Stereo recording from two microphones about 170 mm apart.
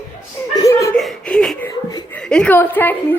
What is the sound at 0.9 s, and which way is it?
A woman's voice, 5° left (ahead or behind).